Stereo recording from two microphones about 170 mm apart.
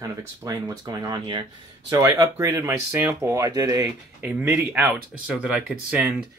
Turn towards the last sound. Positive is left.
turn(degrees=-10)  # may be behind; listen again after turning